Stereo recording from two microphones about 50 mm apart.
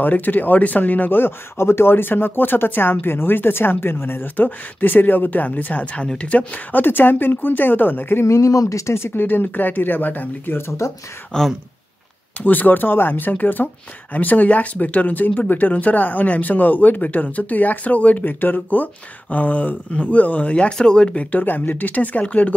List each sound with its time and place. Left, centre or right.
0.0 s speech: left
1.2 s speech: left
6.7 s speech: left
8.3 s speech: left
11.3 s speech: centre
12.4 s speech: left
21.4 s speech: left